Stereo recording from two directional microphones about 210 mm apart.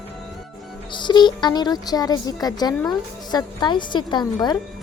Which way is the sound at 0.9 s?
20° left (ahead or behind).